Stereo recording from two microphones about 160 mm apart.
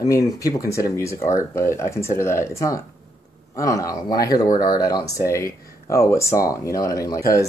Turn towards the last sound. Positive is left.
turn(degrees=20)  # may be behind; listen again after turning